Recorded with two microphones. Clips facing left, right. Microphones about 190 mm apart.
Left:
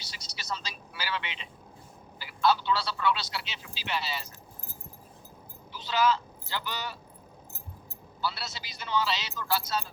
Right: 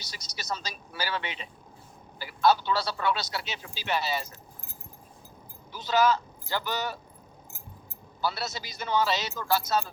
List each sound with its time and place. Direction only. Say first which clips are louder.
0.0 s speech: right 4 dB; 45° right (ahead or behind)
5.7 s speech: right 3 dB; 45° right (ahead or behind)
8.2 s speech: right 4 dB; 45° right (ahead or behind)